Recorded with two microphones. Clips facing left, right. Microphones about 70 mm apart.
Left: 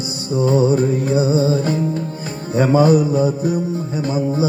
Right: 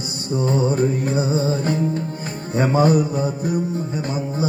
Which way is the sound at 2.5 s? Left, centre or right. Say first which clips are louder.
Left 3 dB; right.